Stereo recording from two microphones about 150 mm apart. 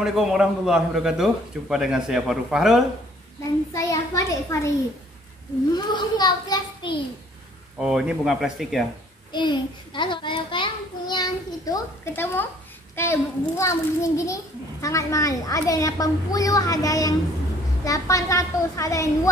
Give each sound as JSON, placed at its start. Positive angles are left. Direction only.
{"t": 0.0, "sound": "a man's voice", "side_deg": 0}
{"t": 3.7, "sound": "a child's voice", "side_deg": 20}
{"t": 5.9, "sound": "a child's voice", "side_deg": 30}
{"t": 7.8, "sound": "a man's voice", "side_deg": -5}
{"t": 9.3, "sound": "a child's voice", "side_deg": 30}